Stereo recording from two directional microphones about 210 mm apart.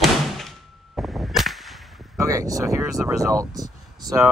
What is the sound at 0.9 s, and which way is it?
Cap gun, centre (ahead or behind).